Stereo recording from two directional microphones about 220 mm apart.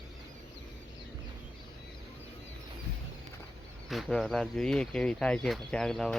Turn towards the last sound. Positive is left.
turn(degrees=0)  # may be behind; listen again after turning